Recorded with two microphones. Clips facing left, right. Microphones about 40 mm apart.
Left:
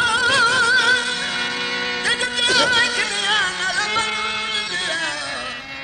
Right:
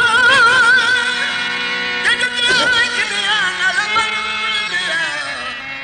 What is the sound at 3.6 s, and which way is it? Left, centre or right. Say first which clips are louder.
Music: right 5 dB; right.